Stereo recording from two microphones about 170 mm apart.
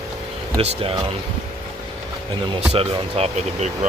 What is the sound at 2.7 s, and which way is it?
Speech, 35° right (ahead or behind).